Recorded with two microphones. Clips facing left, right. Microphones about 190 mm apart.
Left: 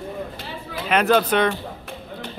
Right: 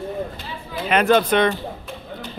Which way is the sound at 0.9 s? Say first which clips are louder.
Right 1 dB; 5° left (ahead or behind).